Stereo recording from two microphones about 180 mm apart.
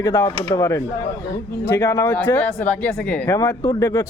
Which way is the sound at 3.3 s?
20° left (ahead or behind).